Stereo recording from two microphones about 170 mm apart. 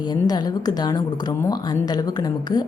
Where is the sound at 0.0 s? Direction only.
25° left (ahead or behind).